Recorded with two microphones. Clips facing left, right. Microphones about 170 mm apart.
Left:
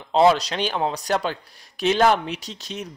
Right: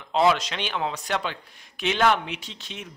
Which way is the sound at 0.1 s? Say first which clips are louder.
Left 4 dB; 35° left (ahead or behind).